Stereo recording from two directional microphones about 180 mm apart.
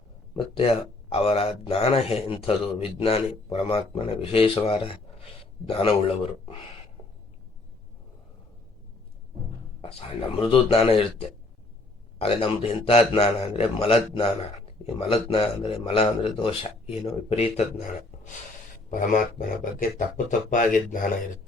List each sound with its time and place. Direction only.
0.3 s speech: 30° left (ahead or behind)
10.2 s speech: 30° left (ahead or behind)
12.2 s speech: 35° left (ahead or behind)
18.9 s speech: 45° left (ahead or behind)